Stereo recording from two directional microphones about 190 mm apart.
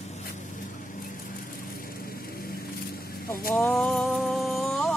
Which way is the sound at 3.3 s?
50° left (ahead or behind).